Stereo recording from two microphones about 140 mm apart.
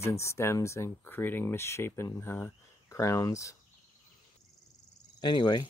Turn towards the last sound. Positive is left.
turn(degrees=35)  # may be behind; listen again after turning